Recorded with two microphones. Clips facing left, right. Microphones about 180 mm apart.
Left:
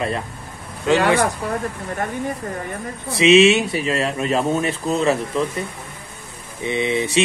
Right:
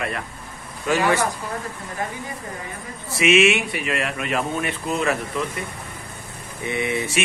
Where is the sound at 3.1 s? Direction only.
25° left (ahead or behind).